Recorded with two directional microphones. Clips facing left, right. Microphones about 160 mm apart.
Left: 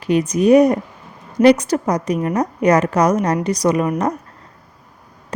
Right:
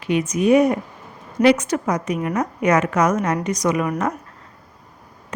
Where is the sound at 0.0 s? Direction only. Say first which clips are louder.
Left 4 dB; 35° left (ahead or behind).